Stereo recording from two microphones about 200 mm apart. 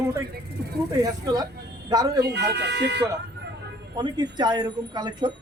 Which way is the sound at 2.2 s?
55° right (ahead or behind).